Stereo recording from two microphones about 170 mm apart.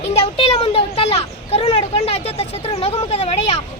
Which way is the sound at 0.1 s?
35° left (ahead or behind).